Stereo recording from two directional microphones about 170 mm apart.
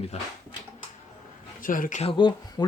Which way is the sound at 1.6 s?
55° left (ahead or behind).